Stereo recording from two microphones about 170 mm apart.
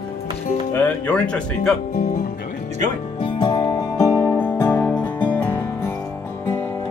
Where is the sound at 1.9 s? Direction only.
50° left (ahead or behind).